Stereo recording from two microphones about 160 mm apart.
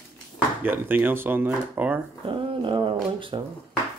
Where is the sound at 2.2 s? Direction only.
30° right (ahead or behind).